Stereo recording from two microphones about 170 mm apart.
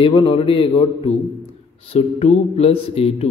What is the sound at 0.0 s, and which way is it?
A man's voice, 30° left (ahead or behind).